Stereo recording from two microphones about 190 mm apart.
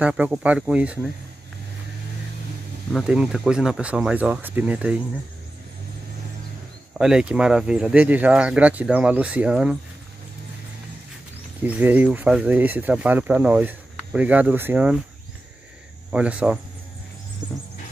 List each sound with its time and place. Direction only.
0.0 s speech: 5° right (ahead or behind)
2.9 s speech: 5° right (ahead or behind)
7.0 s speech: 5° right (ahead or behind)
11.6 s speech: 10° right (ahead or behind)
16.1 s speech: 5° right (ahead or behind)
17.4 s a sound: 20° right (ahead or behind)